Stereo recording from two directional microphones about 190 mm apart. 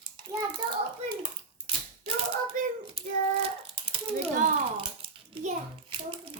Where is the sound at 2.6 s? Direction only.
45° right (ahead or behind).